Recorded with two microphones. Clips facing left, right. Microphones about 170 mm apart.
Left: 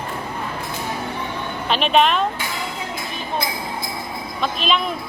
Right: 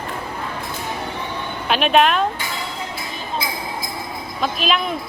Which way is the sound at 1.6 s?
5° right (ahead or behind).